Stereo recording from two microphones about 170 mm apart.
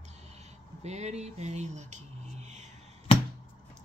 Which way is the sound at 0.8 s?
40° right (ahead or behind).